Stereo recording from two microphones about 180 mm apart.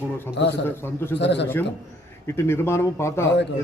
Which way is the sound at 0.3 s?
70° left (ahead or behind).